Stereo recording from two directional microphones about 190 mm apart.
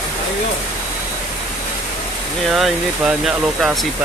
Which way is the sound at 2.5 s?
Centre (ahead or behind).